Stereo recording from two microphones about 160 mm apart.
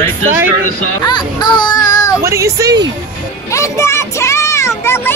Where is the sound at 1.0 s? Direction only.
25° left (ahead or behind).